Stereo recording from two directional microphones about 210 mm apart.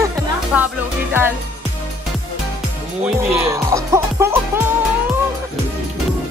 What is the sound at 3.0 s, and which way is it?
Speech, 15° right (ahead or behind).